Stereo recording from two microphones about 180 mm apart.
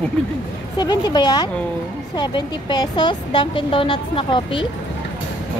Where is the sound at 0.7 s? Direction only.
25° left (ahead or behind).